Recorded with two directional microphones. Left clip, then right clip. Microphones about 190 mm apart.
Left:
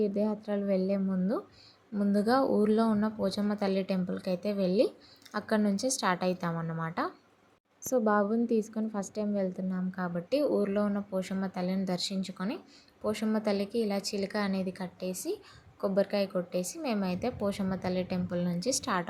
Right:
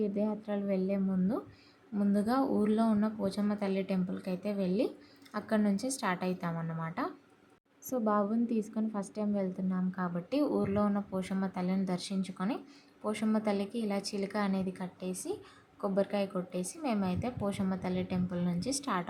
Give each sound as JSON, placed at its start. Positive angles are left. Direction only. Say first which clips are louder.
{"t": 0.0, "sound": "a woman's voice", "louder": "left 3 dB", "side_deg": 15}